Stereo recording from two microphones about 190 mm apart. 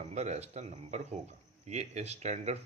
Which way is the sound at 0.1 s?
35° right (ahead or behind).